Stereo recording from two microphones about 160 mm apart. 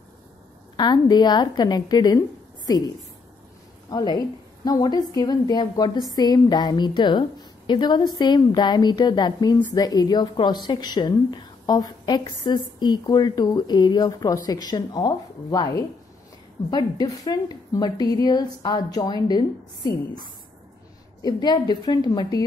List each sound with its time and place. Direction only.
0.7 s speech: 25° left (ahead or behind)
3.9 s speech: 25° left (ahead or behind)
21.2 s speech: 25° left (ahead or behind)